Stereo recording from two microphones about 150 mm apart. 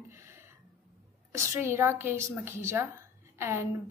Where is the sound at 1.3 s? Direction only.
20° right (ahead or behind).